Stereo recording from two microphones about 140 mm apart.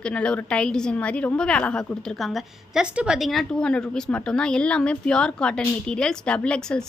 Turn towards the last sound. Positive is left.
turn(degrees=5)  # may be behind; listen again after turning